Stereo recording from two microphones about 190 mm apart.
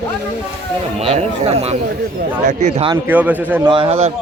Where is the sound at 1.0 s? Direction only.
35° right (ahead or behind).